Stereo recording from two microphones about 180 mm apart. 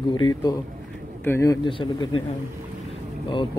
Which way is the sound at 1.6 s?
25° left (ahead or behind).